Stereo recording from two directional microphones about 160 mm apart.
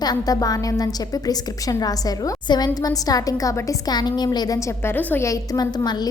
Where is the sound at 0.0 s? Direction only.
25° left (ahead or behind).